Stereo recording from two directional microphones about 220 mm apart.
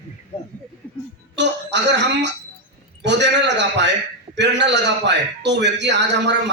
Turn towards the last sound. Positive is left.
turn(degrees=-50)  # may be behind; listen again after turning